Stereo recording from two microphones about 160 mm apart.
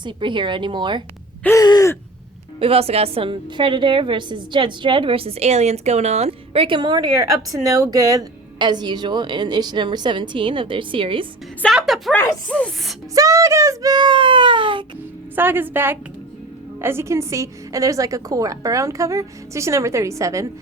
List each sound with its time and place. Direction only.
0.0 s a woman's voice: 30° right (ahead or behind)
1.5 s gasp: 25° left (ahead or behind)
2.6 s a woman's voice: 35° right (ahead or behind)
11.6 s a woman's voice: centre (ahead or behind)
12.1 s speech: 10° left (ahead or behind)
13.1 s a woman's voice: 20° right (ahead or behind)
15.4 s a woman's voice: 15° right (ahead or behind)